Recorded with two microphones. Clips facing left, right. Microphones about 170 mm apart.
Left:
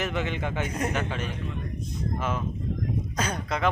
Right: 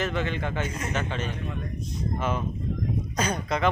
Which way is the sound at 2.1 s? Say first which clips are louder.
Right 2 dB; 5° left (ahead or behind).